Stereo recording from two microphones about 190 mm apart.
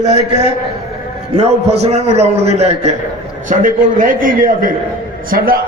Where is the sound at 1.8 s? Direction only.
35° right (ahead or behind).